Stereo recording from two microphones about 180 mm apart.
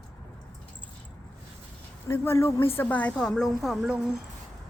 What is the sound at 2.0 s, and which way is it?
A woman's voice, 15° left (ahead or behind).